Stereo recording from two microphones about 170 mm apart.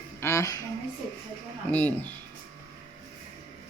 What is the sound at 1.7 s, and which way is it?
Speech, 10° left (ahead or behind).